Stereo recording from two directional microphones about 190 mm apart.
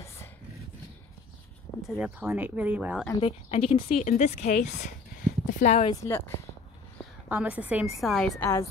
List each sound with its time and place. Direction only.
1.9 s a woman's voice: 5° right (ahead or behind)
3.2 s speech: 30° left (ahead or behind)
6.0 s speech: 10° left (ahead or behind)
7.2 s a woman's voice: 10° right (ahead or behind)